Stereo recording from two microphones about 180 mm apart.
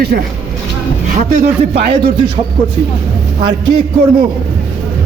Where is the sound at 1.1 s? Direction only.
40° right (ahead or behind).